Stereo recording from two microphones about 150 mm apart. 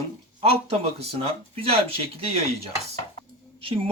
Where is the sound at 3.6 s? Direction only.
40° right (ahead or behind).